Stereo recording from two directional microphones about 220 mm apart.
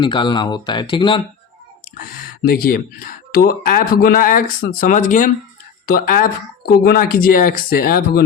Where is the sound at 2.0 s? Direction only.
40° left (ahead or behind).